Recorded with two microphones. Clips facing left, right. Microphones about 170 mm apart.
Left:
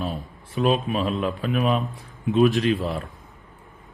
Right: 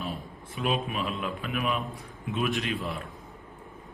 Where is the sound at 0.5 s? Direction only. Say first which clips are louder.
Left 8 dB; 35° left (ahead or behind).